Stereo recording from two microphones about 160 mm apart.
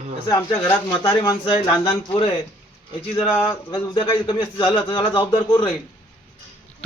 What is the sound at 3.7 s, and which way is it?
A woman's voice, 30° left (ahead or behind).